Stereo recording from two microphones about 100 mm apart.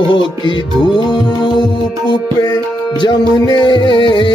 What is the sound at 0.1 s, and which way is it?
Music, 50° left (ahead or behind).